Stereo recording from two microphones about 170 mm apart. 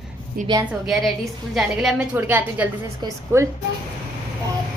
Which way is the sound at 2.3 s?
15° right (ahead or behind).